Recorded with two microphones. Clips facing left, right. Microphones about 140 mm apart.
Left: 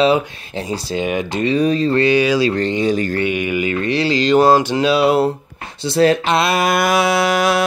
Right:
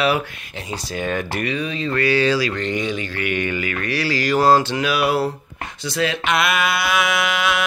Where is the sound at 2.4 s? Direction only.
30° left (ahead or behind).